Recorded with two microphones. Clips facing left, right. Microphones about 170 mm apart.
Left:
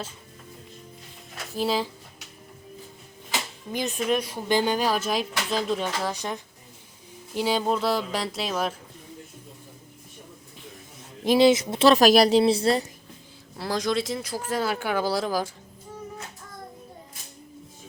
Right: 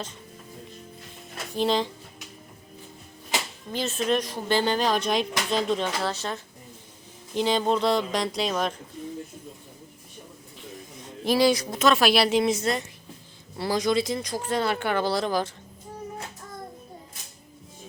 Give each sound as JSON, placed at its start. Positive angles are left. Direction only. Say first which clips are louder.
{"t": 1.5, "sound": "speech", "louder": "right 2 dB", "side_deg": 5}
{"t": 3.7, "sound": "speech", "louder": "even", "side_deg": 15}
{"t": 11.2, "sound": "a woman's voice", "louder": "left 3 dB", "side_deg": 20}
{"t": 13.6, "sound": "speech", "louder": "right 2 dB", "side_deg": 0}